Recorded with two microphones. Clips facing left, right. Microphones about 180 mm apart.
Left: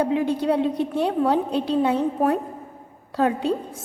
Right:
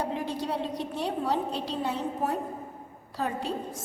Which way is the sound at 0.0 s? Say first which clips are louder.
Left 9 dB; 60° left (ahead or behind).